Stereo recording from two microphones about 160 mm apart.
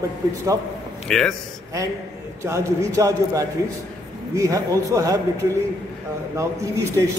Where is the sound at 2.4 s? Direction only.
20° right (ahead or behind).